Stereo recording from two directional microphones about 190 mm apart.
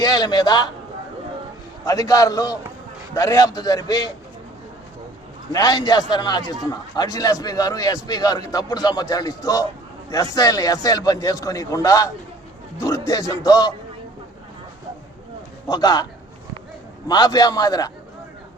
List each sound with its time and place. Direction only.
0.0 s a man's voice: 20° left (ahead or behind)
1.8 s a man's voice: 20° left (ahead or behind)
5.5 s a man's voice: 20° left (ahead or behind)
15.7 s a man's voice: 20° left (ahead or behind)
17.1 s a man's voice: 20° left (ahead or behind)